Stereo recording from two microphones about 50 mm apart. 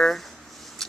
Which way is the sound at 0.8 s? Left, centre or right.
Centre.